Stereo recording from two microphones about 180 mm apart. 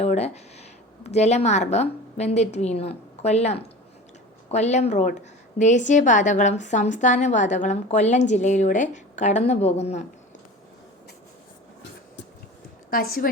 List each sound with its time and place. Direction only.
0.0 s a woman's voice: 35° left (ahead or behind)
12.9 s a woman's voice: 55° left (ahead or behind)